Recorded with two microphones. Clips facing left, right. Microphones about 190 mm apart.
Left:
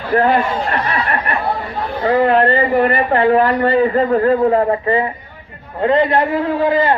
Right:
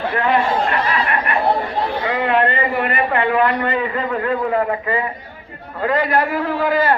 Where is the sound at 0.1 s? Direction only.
40° left (ahead or behind).